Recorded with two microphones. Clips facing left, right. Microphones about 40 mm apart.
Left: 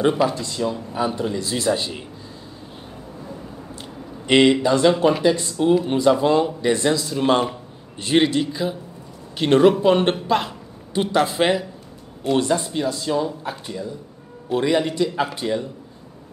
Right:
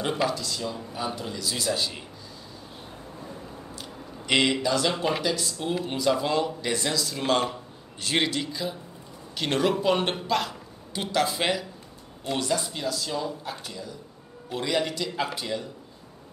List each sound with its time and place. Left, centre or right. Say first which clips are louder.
0.3 s speech: left 6 dB; left
4.3 s speech: left 8 dB; left